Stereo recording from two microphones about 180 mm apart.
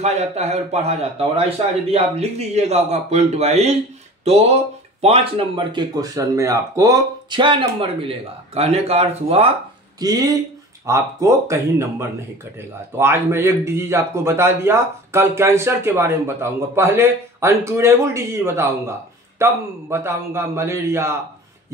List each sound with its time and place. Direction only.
0.0 s a man's voice: 40° right (ahead or behind)
9.9 s speech: 20° right (ahead or behind)